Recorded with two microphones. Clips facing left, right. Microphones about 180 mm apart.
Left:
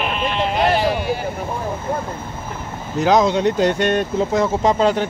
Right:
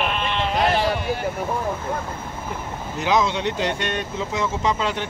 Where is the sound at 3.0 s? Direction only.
40° left (ahead or behind).